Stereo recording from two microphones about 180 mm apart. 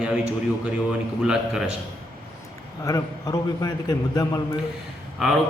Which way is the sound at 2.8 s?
20° left (ahead or behind).